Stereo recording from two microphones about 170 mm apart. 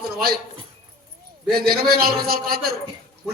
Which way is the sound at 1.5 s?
60° right (ahead or behind).